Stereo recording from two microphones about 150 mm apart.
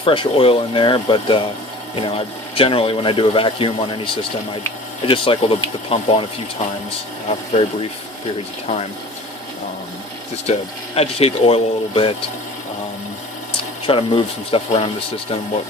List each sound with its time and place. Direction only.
0.0 s speech: 35° left (ahead or behind)
10.4 s speech: 45° left (ahead or behind)
13.8 s speech: 35° left (ahead or behind)